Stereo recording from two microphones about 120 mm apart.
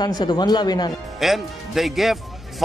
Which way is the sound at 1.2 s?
Centre (ahead or behind).